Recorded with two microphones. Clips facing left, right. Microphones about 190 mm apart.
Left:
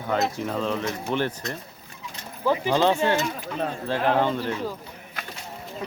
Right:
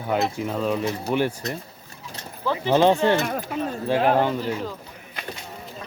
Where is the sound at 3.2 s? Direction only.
55° right (ahead or behind).